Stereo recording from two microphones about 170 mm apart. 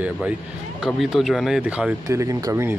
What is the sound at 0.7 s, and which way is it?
Speech, centre (ahead or behind).